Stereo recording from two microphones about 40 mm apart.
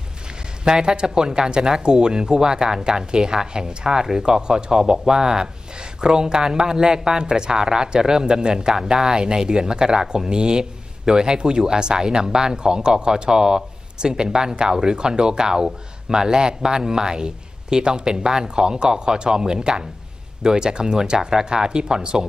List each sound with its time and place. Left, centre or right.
0.7 s speech: centre